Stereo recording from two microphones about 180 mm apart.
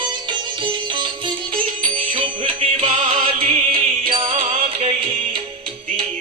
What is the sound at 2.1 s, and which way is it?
Music, 30° right (ahead or behind).